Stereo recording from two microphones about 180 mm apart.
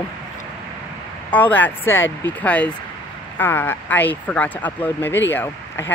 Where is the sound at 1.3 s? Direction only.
10° left (ahead or behind).